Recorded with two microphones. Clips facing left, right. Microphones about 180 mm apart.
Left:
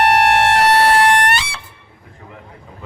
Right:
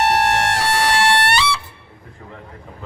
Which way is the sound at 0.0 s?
60° left (ahead or behind).